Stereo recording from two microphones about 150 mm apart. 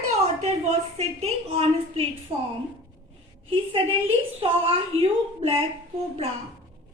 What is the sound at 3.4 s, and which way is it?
A woman's voice, 35° right (ahead or behind).